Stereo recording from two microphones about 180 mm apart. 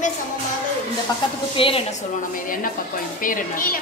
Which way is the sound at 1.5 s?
30° left (ahead or behind).